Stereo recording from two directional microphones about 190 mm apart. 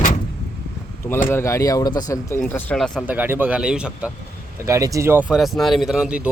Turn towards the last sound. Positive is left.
turn(degrees=-5)  # may be behind; listen again after turning